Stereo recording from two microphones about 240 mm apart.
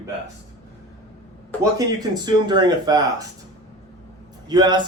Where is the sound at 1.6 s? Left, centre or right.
Centre.